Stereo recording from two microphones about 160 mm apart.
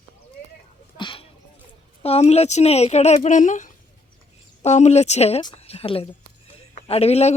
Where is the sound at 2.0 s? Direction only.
40° left (ahead or behind).